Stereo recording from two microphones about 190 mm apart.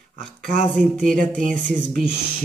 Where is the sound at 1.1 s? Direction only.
45° right (ahead or behind).